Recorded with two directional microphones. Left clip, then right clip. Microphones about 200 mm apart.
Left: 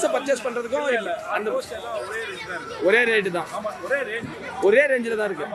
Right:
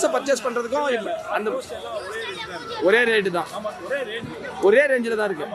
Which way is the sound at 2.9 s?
10° right (ahead or behind).